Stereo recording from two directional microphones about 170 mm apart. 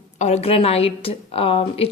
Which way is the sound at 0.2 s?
40° left (ahead or behind).